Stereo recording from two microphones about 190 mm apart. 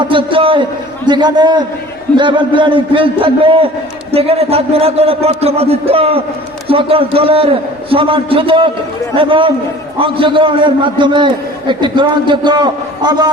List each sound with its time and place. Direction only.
0.0 s a man's voice: 25° right (ahead or behind)